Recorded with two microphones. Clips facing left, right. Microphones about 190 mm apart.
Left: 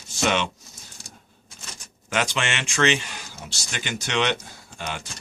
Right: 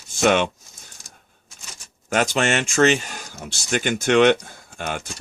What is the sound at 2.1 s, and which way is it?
Speech, 45° right (ahead or behind).